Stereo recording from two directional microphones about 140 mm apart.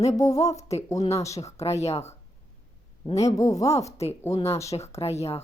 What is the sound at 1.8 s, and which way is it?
Speech, 50° left (ahead or behind).